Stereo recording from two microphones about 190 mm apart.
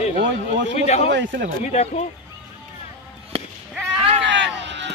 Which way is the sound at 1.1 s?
70° right (ahead or behind).